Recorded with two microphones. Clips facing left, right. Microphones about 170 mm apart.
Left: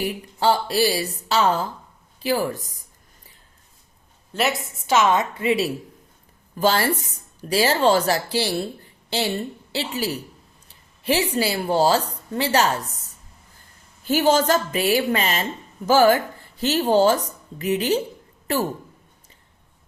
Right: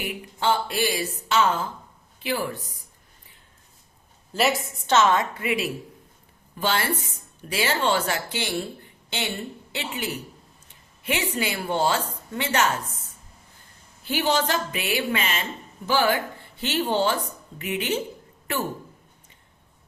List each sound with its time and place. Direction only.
0.0 s speech: 35° left (ahead or behind)
4.3 s a woman's voice: centre (ahead or behind)
4.9 s a woman's voice: 20° left (ahead or behind)
6.6 s a woman's voice: 40° left (ahead or behind)